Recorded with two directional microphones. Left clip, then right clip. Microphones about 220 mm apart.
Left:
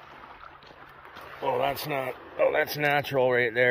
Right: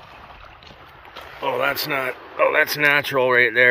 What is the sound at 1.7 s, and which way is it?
Speech, 5° left (ahead or behind).